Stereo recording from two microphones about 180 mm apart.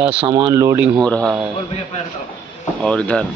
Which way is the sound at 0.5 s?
15° right (ahead or behind).